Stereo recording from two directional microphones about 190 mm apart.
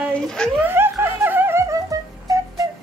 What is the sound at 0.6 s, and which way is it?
Speech, 10° right (ahead or behind).